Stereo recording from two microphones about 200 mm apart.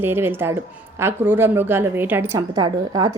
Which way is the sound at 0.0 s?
10° right (ahead or behind).